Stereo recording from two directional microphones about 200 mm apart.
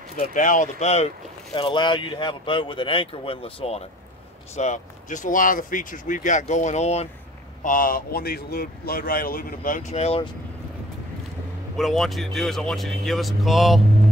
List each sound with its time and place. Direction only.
0.3 s speech: 40° left (ahead or behind)
7.6 s a man's voice: 45° left (ahead or behind)
11.7 s speech: centre (ahead or behind)